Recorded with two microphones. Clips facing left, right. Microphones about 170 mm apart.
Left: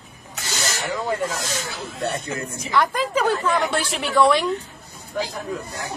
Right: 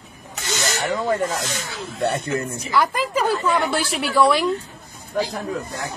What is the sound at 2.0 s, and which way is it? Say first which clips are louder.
Speech: right 4 dB; 65° right (ahead or behind).